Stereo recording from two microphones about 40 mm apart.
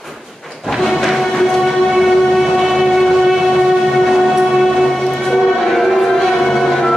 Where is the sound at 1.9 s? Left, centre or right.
Centre.